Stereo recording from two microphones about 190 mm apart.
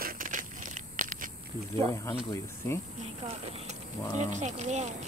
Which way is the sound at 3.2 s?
30° right (ahead or behind).